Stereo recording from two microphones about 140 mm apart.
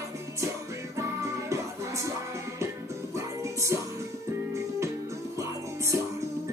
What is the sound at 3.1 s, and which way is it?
Music, 20° right (ahead or behind).